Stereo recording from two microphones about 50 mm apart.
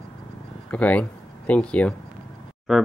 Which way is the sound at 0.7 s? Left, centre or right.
Left.